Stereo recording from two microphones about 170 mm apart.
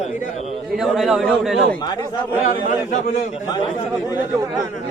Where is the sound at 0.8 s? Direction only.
5° right (ahead or behind).